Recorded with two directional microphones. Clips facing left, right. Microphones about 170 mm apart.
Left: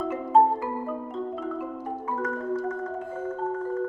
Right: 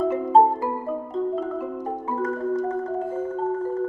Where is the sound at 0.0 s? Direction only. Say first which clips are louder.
Right 4 dB; 30° right (ahead or behind).